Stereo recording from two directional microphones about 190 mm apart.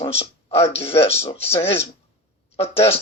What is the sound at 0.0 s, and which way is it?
Speech, 30° left (ahead or behind).